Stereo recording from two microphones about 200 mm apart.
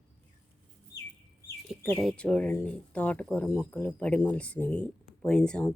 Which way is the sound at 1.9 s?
Centre (ahead or behind).